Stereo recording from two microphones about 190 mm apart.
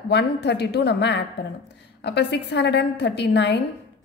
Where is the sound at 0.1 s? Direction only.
65° left (ahead or behind).